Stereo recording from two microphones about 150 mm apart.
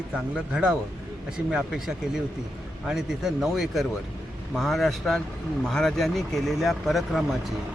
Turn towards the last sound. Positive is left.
turn(degrees=0)  # may be behind; listen again after turning